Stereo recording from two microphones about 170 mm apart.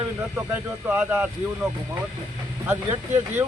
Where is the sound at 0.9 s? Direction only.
10° right (ahead or behind).